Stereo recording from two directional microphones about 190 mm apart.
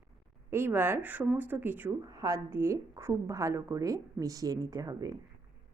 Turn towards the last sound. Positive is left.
turn(degrees=-20)  # may be behind; listen again after turning